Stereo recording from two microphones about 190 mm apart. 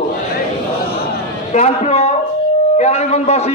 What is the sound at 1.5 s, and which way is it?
A man's voice, 35° left (ahead or behind).